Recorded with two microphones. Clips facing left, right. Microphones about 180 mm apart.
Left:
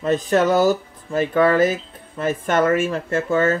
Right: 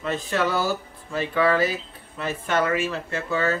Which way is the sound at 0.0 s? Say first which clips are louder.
Left 7 dB; 45° left (ahead or behind).